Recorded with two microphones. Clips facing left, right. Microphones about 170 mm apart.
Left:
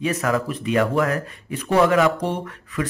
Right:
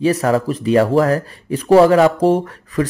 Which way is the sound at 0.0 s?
30° right (ahead or behind).